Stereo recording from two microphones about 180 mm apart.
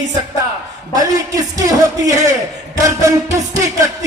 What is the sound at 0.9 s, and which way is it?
A man's voice, 20° right (ahead or behind).